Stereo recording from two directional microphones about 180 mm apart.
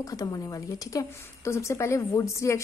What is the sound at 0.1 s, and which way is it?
A woman's voice, 20° left (ahead or behind).